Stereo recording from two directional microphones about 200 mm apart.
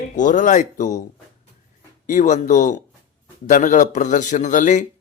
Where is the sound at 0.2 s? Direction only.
40° left (ahead or behind).